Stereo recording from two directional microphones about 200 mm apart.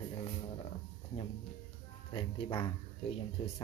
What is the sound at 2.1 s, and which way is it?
Speech, 25° left (ahead or behind).